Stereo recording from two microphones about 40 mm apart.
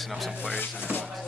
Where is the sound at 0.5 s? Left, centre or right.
Left.